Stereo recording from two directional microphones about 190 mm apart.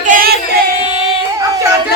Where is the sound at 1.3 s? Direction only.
15° right (ahead or behind).